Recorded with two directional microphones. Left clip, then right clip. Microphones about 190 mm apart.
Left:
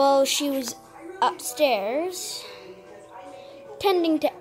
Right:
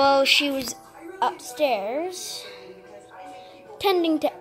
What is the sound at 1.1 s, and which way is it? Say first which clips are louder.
A woman's voice: left 2 dB; 5° left (ahead or behind).